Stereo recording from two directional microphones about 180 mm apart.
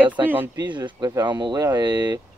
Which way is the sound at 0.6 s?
25° right (ahead or behind).